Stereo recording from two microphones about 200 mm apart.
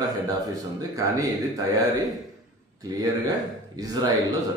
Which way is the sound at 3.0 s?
20° right (ahead or behind).